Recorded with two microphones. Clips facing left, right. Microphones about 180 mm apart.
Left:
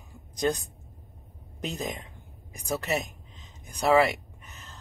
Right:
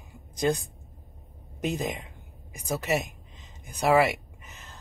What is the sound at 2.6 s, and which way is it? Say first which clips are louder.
Speech: even; 5° right (ahead or behind).